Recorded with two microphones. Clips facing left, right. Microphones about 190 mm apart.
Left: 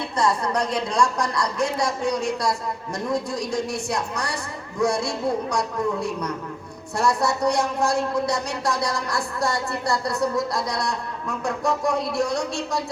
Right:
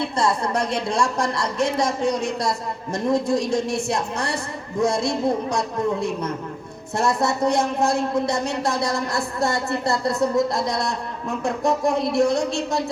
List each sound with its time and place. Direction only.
0.2 s speech: 25° right (ahead or behind)